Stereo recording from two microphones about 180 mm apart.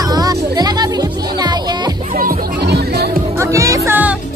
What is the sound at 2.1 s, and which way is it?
Music, 50° right (ahead or behind).